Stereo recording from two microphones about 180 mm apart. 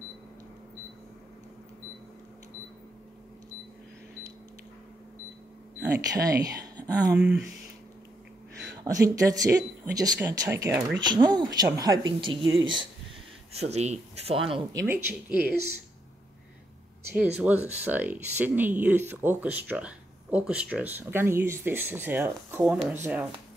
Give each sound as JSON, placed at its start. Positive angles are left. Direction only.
{"t": 5.9, "sound": "speech", "side_deg": -20}
{"t": 7.2, "sound": "speech", "side_deg": -5}
{"t": 8.8, "sound": "speech", "side_deg": -20}
{"t": 11.0, "sound": "speech", "side_deg": -25}
{"t": 13.6, "sound": "speech", "side_deg": -35}
{"t": 14.7, "sound": "speech", "side_deg": -20}
{"t": 17.1, "sound": "speech", "side_deg": -10}